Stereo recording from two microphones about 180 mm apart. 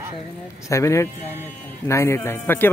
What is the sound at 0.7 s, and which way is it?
A man's voice, 15° left (ahead or behind).